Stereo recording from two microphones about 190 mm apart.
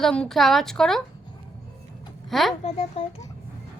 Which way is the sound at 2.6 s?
35° left (ahead or behind).